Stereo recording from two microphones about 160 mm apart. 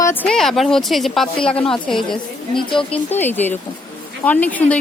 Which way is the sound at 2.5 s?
30° left (ahead or behind).